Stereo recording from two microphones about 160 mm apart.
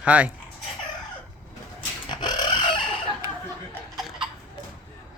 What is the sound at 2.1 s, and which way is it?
Chicken, 25° left (ahead or behind).